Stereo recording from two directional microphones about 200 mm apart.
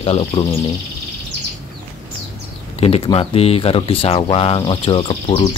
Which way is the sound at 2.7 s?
30° left (ahead or behind).